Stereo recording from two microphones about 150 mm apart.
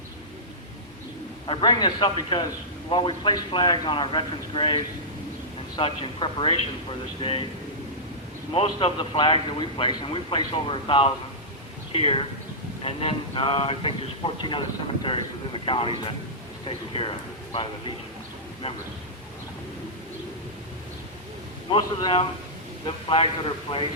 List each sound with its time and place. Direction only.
1.5 s a man's voice: 30° left (ahead or behind)
8.5 s a man's voice: 40° left (ahead or behind)
21.7 s a man's voice: 35° left (ahead or behind)